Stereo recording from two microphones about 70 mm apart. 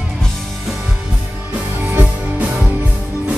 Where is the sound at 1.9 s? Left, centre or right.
Right.